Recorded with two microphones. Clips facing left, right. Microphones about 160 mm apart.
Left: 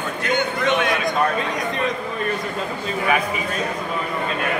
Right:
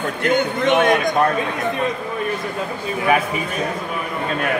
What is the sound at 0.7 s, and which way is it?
Speech, 45° right (ahead or behind).